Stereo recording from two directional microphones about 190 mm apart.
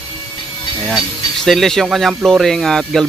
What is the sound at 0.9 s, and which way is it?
Speech, centre (ahead or behind).